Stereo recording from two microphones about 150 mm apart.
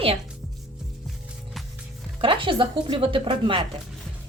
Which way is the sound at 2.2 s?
35° right (ahead or behind).